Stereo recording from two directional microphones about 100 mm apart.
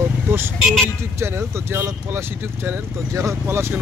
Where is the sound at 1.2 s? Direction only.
25° right (ahead or behind).